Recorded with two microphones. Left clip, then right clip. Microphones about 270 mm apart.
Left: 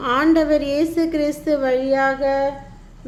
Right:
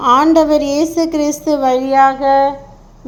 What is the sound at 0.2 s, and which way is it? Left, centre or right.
A woman's voice, centre.